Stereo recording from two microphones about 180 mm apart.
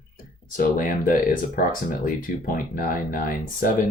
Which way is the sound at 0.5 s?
50° left (ahead or behind).